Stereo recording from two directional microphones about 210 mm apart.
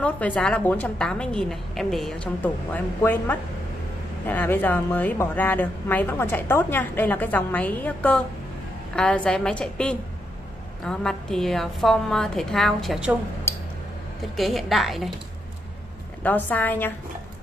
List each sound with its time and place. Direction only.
0.0 s a woman's voice: 5° left (ahead or behind)
14.3 s a woman's voice: centre (ahead or behind)
16.2 s a woman's voice: 10° left (ahead or behind)